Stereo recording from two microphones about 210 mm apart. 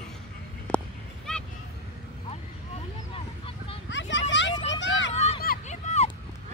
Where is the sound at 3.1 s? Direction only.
25° left (ahead or behind).